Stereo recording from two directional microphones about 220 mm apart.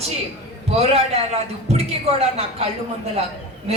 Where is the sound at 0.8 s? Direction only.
30° right (ahead or behind).